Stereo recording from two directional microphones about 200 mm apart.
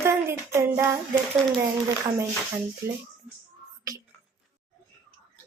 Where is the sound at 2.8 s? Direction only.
15° right (ahead or behind).